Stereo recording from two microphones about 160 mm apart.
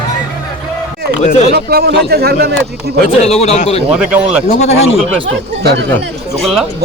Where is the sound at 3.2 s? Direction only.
40° left (ahead or behind).